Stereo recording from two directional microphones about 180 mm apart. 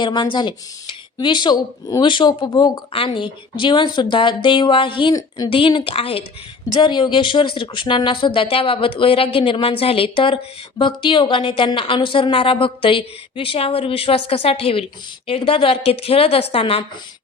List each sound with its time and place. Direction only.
0.0 s a woman's voice: 25° left (ahead or behind)